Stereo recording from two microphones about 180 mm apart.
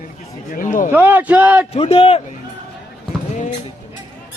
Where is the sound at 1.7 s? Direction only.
35° left (ahead or behind).